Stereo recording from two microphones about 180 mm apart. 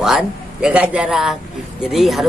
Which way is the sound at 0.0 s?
5° right (ahead or behind).